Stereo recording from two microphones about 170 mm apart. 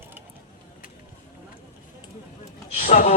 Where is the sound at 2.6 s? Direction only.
45° left (ahead or behind).